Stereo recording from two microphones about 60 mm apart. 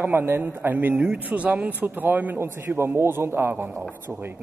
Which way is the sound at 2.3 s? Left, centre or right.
Right.